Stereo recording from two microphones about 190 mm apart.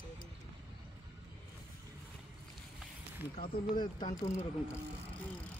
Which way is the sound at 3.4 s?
50° left (ahead or behind).